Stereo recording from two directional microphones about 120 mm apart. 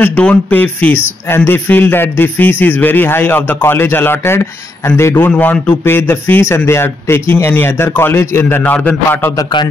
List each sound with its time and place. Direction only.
0.0 s speech: 10° left (ahead or behind)
9.4 s a man's voice: 40° left (ahead or behind)